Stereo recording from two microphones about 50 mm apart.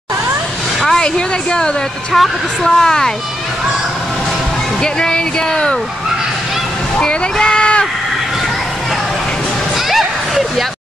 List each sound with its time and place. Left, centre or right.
0.8 s a woman's voice: centre
4.8 s a woman's voice: centre
7.0 s speech: centre
9.8 s a sound: centre